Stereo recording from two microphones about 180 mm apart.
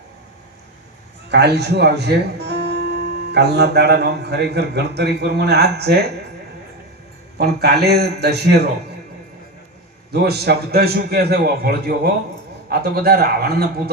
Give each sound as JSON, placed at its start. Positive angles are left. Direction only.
{"t": 1.3, "sound": "a man's voice", "side_deg": -70}
{"t": 7.3, "sound": "a man's voice", "side_deg": -65}
{"t": 10.1, "sound": "a man's voice", "side_deg": -65}